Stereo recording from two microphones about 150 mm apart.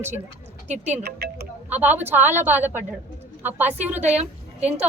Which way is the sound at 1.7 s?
10° right (ahead or behind).